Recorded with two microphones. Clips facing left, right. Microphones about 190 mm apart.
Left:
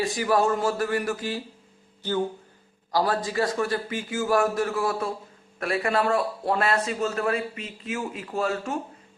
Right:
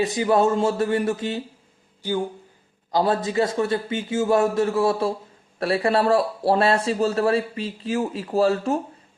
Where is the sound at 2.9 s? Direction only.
20° right (ahead or behind).